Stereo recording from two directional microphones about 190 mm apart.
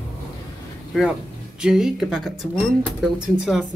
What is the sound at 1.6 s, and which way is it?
Speech, 5° right (ahead or behind).